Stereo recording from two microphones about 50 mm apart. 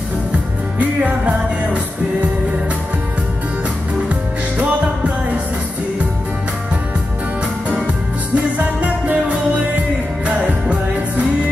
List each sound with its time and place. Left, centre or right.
0.7 s music: right
8.5 s music: right